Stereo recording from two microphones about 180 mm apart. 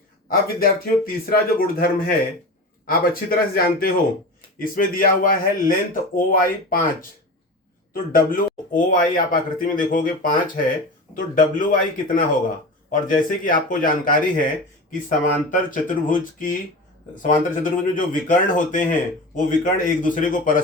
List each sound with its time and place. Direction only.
0.3 s a man's voice: 55° left (ahead or behind)
7.9 s speech: 50° left (ahead or behind)